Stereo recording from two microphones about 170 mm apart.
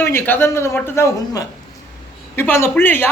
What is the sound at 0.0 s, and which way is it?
Speech, 15° left (ahead or behind).